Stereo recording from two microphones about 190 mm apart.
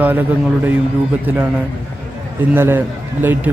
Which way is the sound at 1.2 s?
10° right (ahead or behind).